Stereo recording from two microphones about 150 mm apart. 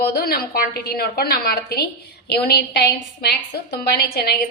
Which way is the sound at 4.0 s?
90° left.